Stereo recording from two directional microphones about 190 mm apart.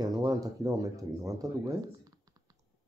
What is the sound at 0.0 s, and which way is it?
Speech, 20° right (ahead or behind).